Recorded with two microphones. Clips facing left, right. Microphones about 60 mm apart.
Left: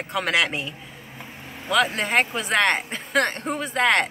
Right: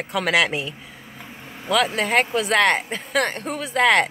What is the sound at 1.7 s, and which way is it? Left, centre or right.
Speech, centre.